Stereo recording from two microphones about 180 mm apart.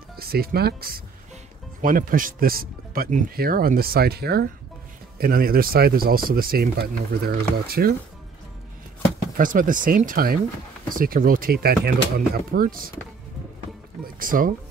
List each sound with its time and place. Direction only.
0.1 s speech: 55° right (ahead or behind)
9.4 s speech: 50° right (ahead or behind)
14.2 s speech: 50° right (ahead or behind)